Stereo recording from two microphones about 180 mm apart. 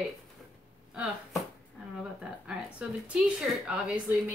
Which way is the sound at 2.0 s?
5° right (ahead or behind).